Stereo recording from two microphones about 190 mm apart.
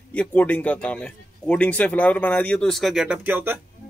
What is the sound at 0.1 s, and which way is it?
Speech, 5° left (ahead or behind).